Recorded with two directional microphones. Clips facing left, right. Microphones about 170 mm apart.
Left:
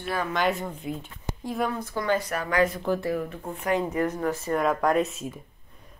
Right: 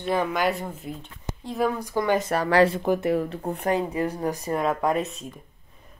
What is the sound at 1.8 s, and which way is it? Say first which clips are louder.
Speech: right 3 dB; 15° right (ahead or behind).